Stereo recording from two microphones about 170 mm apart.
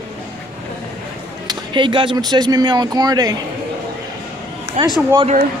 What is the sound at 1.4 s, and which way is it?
Speech, 25° right (ahead or behind).